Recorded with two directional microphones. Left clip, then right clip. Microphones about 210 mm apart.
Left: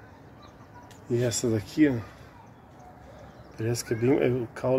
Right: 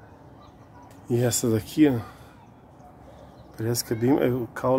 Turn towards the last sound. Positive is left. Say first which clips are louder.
# right 2 dB
turn(degrees=-10)  # may be behind; listen again after turning